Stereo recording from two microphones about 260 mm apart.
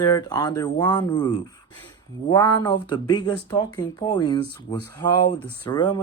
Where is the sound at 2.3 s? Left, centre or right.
Centre.